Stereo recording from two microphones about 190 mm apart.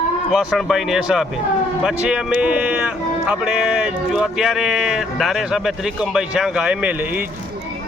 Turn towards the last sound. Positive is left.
turn(degrees=-10)  # may be behind; listen again after turning